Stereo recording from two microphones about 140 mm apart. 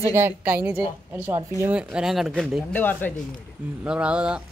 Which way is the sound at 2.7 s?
15° left (ahead or behind).